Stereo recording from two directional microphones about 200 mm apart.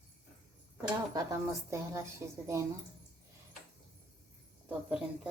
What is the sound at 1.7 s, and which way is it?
Speech, 15° right (ahead or behind).